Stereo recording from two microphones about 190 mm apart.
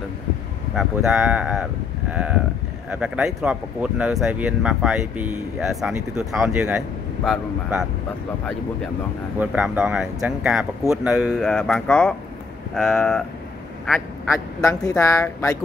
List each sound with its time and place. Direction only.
0.7 s speech: 5° right (ahead or behind)
9.4 s speech: 5° right (ahead or behind)
14.6 s speech: 15° left (ahead or behind)